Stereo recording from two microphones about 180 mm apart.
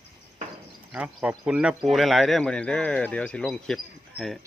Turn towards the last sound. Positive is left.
turn(degrees=0)  # may be behind; listen again after turning